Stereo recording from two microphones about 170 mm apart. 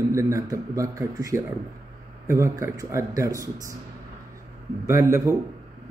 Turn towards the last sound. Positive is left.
turn(degrees=-15)  # may be behind; listen again after turning